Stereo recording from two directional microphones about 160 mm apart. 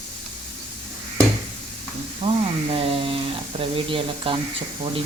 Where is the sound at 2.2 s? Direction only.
35° right (ahead or behind).